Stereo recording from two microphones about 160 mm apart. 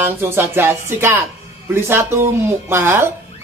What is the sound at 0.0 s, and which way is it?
Speech, 15° right (ahead or behind).